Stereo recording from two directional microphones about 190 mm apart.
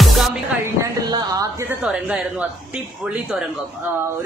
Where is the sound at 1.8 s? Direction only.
5° right (ahead or behind).